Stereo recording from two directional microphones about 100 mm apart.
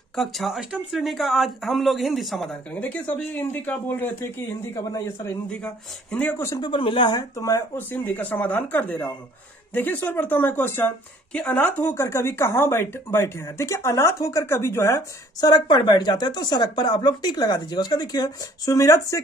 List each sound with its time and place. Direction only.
0.1 s speech: centre (ahead or behind)
2.7 s speech: 15° left (ahead or behind)
4.7 s speech: 35° left (ahead or behind)
6.1 s speech: 20° left (ahead or behind)
6.5 s speech: 50° left (ahead or behind)
7.3 s speech: 35° left (ahead or behind)
7.7 s speech: 20° left (ahead or behind)